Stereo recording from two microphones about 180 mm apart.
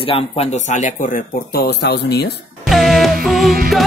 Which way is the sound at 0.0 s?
30° left (ahead or behind).